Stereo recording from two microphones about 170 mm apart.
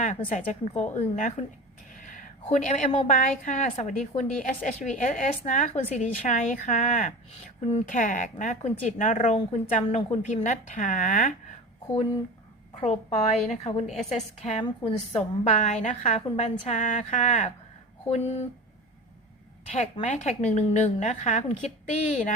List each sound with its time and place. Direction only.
0.0 s a woman's voice: 45° left (ahead or behind)
1.9 s a sound: 50° left (ahead or behind)
2.9 s a woman's voice: 50° left (ahead or behind)
12.8 s a woman's voice: 40° left (ahead or behind)
14.6 s a woman's voice: 30° left (ahead or behind)
19.7 s a woman's voice: 40° left (ahead or behind)